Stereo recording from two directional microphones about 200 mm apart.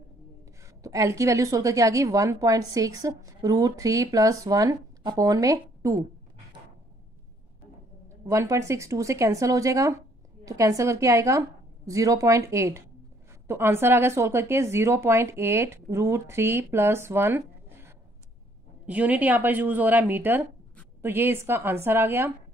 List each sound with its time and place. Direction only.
0.8 s a woman's voice: 15° right (ahead or behind)
8.3 s a woman's voice: 15° right (ahead or behind)